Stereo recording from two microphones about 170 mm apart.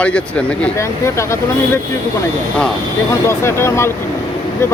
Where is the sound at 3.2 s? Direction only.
15° left (ahead or behind).